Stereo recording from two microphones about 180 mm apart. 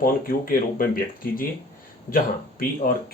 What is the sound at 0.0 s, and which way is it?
Speech, 55° left (ahead or behind).